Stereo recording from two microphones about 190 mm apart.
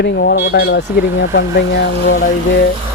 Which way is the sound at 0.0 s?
60° left (ahead or behind).